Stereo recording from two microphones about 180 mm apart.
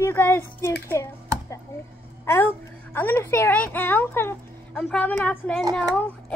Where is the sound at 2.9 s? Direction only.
10° left (ahead or behind).